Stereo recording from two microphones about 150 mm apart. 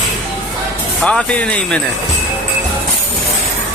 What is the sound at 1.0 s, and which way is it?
Speech, 5° left (ahead or behind).